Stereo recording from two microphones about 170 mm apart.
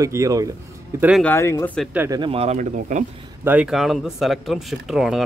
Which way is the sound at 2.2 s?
35° right (ahead or behind).